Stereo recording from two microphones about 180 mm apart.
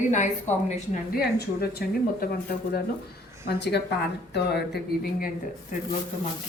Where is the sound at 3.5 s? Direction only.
70° left (ahead or behind).